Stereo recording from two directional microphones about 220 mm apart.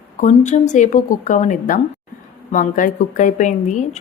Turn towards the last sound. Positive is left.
turn(degrees=35)  # may be behind; listen again after turning